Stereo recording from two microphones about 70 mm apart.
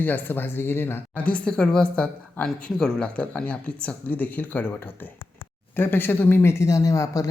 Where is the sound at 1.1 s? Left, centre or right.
Centre.